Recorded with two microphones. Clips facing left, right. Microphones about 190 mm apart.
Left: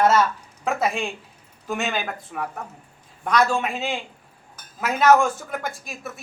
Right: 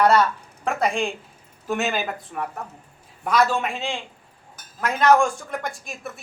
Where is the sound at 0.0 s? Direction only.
5° left (ahead or behind).